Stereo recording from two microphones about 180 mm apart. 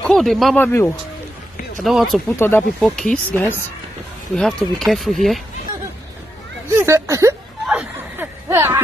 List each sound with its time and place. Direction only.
0.0 s speech: centre (ahead or behind)
1.8 s speech: centre (ahead or behind)
2.1 s speech: 10° left (ahead or behind)
6.8 s speech: 15° right (ahead or behind)
7.6 s a sound: 5° right (ahead or behind)
8.5 s a sound: 15° right (ahead or behind)